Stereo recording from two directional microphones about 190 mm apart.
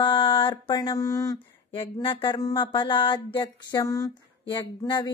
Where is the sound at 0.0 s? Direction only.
25° left (ahead or behind).